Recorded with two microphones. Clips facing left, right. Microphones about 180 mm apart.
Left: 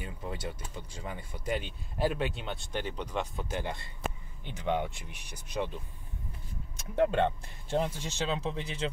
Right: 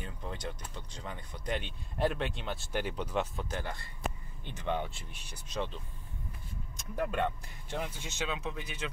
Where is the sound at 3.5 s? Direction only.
20° left (ahead or behind).